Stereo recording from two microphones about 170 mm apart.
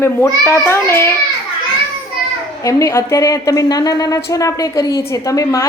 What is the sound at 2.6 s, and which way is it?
A woman's voice, 20° left (ahead or behind).